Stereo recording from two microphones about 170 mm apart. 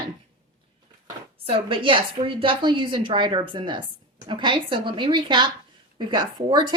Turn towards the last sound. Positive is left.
turn(degrees=-25)  # may be behind; listen again after turning